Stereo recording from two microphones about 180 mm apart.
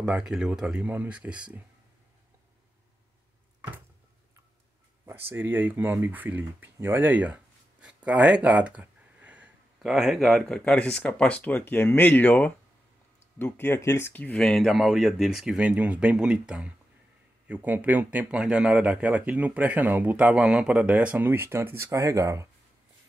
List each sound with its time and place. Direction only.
0.0 s speech: 5° right (ahead or behind)
5.3 s speech: 10° right (ahead or behind)